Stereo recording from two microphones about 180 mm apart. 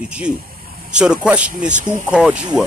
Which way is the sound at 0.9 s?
5° right (ahead or behind).